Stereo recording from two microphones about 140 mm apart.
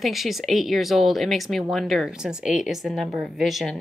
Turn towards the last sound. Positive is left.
turn(degrees=0)  # may be behind; listen again after turning